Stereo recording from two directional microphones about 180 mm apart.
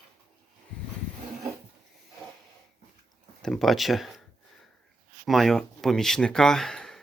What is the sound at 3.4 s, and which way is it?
Speech, centre (ahead or behind).